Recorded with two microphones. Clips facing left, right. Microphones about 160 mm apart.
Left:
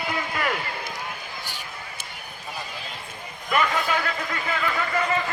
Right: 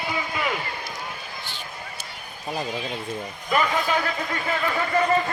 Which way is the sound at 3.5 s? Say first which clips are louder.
Right 1 dB; 25° right (ahead or behind).